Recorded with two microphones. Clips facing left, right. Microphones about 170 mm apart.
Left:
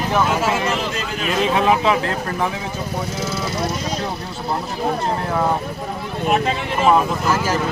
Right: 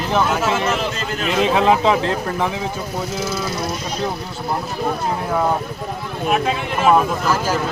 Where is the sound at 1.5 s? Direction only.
30° right (ahead or behind).